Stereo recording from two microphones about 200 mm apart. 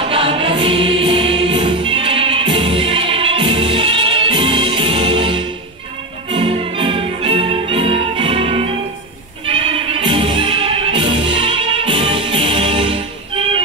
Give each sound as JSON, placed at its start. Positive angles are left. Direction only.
{"t": 0.1, "sound": "choir", "side_deg": -25}
{"t": 6.3, "sound": "music", "side_deg": -25}